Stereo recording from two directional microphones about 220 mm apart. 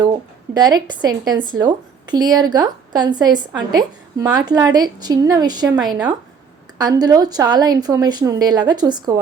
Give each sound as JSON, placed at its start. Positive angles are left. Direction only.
{"t": 0.0, "sound": "speech", "side_deg": -20}